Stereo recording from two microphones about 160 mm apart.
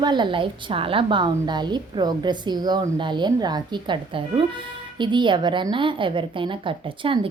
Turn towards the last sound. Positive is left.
turn(degrees=-35)  # may be behind; listen again after turning